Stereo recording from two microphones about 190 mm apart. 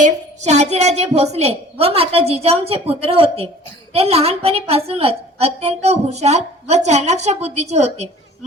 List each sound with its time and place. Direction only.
0.0 s a woman's voice: 35° right (ahead or behind)